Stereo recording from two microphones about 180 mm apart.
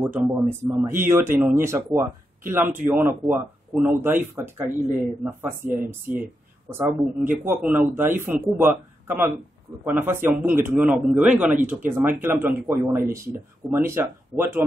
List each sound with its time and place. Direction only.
0.0 s speech: 10° right (ahead or behind)
3.2 s speech: centre (ahead or behind)
3.9 s speech: 10° right (ahead or behind)